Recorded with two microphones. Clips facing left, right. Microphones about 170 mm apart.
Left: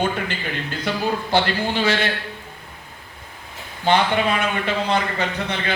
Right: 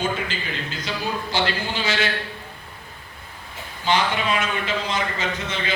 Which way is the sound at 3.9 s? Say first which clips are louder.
Left 4 dB; 50° left (ahead or behind).